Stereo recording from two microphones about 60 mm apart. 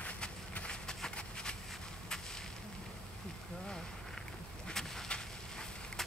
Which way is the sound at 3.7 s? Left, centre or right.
Centre.